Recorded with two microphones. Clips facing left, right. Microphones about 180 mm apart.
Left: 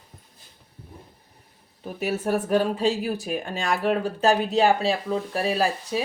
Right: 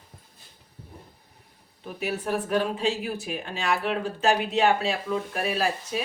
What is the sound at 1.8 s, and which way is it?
Speech, 40° left (ahead or behind).